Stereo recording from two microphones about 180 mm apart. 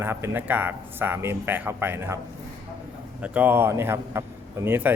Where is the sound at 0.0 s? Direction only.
10° right (ahead or behind).